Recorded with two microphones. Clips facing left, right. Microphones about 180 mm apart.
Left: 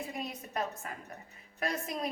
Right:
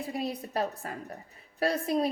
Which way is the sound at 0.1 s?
35° right (ahead or behind).